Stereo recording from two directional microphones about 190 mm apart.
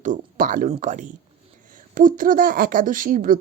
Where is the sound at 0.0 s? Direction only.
40° right (ahead or behind).